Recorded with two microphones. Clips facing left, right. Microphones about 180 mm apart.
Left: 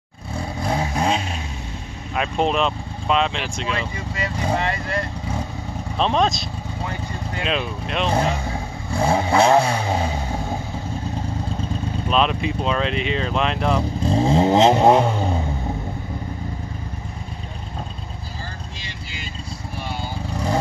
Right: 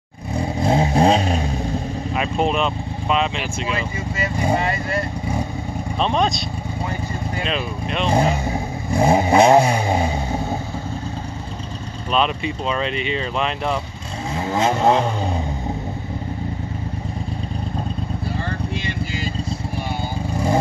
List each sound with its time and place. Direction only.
0.4 s vehicle: 20° right (ahead or behind); by 1.4 s 40° right (ahead or behind)
2.1 s speech: centre (ahead or behind)
8.1 s speech: 10° right (ahead or behind)
12.1 s speech: centre (ahead or behind)
14.0 s vehicle: 30° left (ahead or behind); by 15.1 s 15° left (ahead or behind)